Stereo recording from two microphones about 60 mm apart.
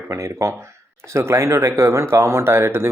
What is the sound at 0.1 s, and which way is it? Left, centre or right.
Speech, right.